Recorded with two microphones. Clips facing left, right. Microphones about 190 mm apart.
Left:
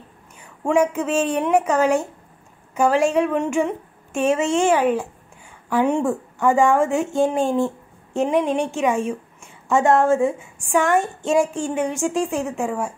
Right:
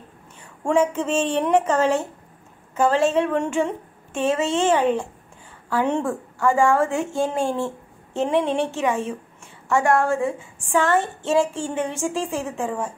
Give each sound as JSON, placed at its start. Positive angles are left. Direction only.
{"t": 0.7, "sound": "a woman's voice", "side_deg": 10}